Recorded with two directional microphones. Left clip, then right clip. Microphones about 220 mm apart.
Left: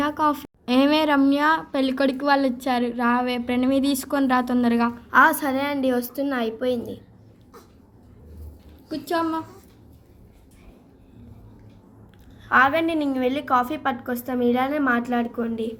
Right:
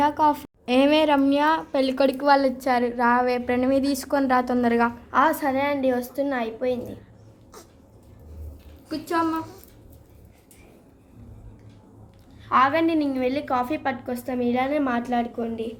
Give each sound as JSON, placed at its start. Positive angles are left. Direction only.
{"t": 0.0, "sound": "a woman's voice", "side_deg": 0}
{"t": 5.1, "sound": "a woman's voice", "side_deg": 25}
{"t": 8.9, "sound": "a woman's voice", "side_deg": -5}
{"t": 12.5, "sound": "a woman's voice", "side_deg": 10}